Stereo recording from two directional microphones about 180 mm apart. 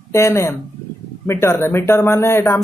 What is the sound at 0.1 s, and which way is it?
Speech, 15° left (ahead or behind).